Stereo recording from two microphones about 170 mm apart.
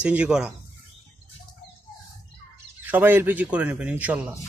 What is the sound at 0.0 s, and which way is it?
Speech, 5° right (ahead or behind).